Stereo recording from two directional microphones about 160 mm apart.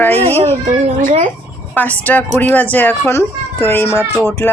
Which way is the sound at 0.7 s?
50° right (ahead or behind).